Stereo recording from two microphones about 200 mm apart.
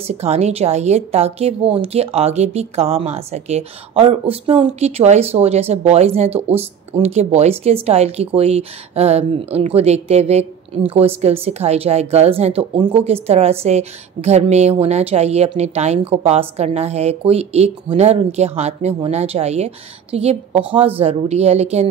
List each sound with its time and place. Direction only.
0.0 s a woman's voice: 30° right (ahead or behind)